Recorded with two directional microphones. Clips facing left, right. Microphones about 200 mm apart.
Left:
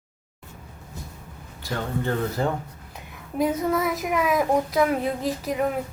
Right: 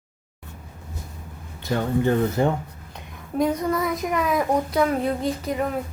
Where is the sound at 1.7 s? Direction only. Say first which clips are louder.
Right 6 dB; 20° right (ahead or behind).